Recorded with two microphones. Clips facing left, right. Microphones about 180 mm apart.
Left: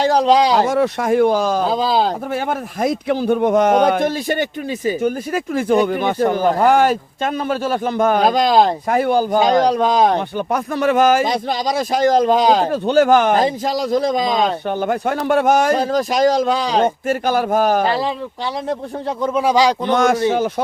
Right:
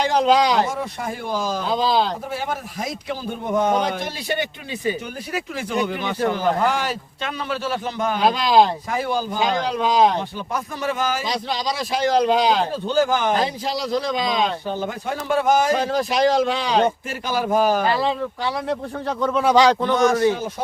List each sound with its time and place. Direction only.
0.0 s speech: 35° left (ahead or behind)
0.7 s speech: 75° left (ahead or behind); by 1.6 s 60° left (ahead or behind)
1.6 s speech: 45° left (ahead or behind)
9.4 s speech: 40° left (ahead or behind)
12.7 s speech: 70° left (ahead or behind)
13.3 s speech: 45° left (ahead or behind)
14.7 s speech: 60° left (ahead or behind)
15.7 s speech: 40° left (ahead or behind)
17.2 s speech: 50° left (ahead or behind)
19.3 s speech: 10° left (ahead or behind)
19.9 s speech: 75° left (ahead or behind)